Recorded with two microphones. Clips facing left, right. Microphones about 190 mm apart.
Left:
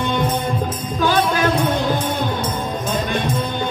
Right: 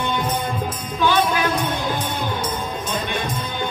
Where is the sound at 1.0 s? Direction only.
45° left (ahead or behind).